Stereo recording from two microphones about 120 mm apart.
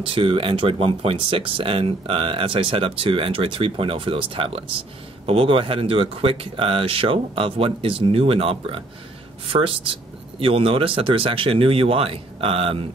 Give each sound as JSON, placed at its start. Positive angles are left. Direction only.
{"t": 0.0, "sound": "speech", "side_deg": -50}